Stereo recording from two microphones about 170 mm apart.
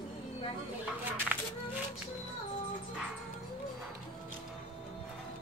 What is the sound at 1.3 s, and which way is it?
Music, 10° right (ahead or behind).